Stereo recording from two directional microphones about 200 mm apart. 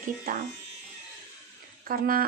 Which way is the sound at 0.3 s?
45° right (ahead or behind).